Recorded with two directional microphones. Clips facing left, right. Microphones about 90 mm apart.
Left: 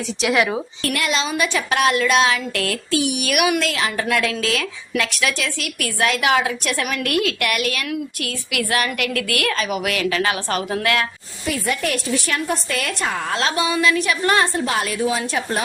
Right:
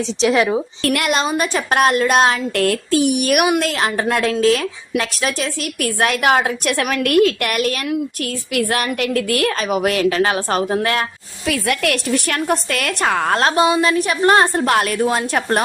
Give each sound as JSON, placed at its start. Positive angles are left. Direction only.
{"t": 0.2, "sound": "a woman's voice", "side_deg": -30}
{"t": 0.8, "sound": "a woman's voice", "side_deg": -50}
{"t": 11.4, "sound": "a woman's voice", "side_deg": -85}